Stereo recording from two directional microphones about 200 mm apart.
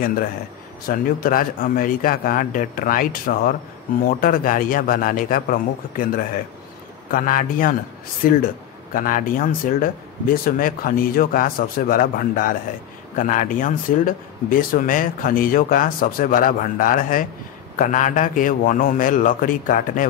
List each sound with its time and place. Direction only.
0.8 s speech: 45° left (ahead or behind)
8.9 s speech: 40° left (ahead or behind)